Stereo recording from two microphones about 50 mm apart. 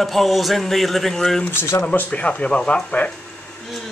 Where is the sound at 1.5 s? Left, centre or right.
Left.